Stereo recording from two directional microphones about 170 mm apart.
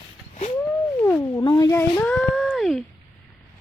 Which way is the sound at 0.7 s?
10° left (ahead or behind).